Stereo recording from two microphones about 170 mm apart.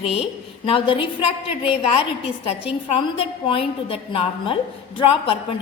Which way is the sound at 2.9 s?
30° left (ahead or behind).